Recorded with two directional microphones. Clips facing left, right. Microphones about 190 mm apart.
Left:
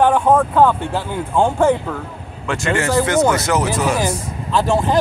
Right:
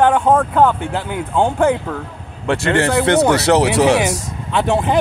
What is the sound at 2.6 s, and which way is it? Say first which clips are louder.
Speech: even; 65° right (ahead or behind).